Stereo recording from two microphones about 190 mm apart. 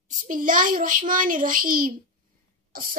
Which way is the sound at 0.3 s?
45° right (ahead or behind).